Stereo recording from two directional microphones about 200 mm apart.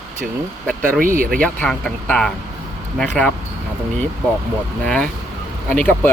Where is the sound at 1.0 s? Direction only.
40° right (ahead or behind).